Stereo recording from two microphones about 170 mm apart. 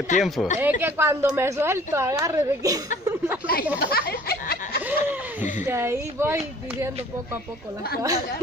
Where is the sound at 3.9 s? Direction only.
65° left (ahead or behind).